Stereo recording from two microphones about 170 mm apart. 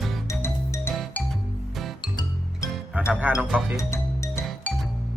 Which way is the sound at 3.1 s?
10° right (ahead or behind).